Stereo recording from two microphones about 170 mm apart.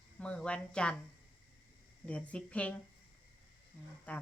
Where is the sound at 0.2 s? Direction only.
5° left (ahead or behind).